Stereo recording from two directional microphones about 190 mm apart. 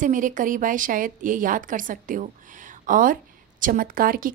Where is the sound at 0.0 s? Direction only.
45° right (ahead or behind).